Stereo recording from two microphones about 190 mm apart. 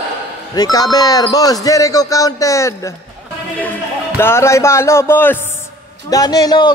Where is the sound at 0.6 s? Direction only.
20° left (ahead or behind).